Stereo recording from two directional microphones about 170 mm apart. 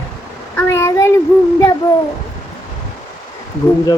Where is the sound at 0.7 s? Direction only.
15° left (ahead or behind).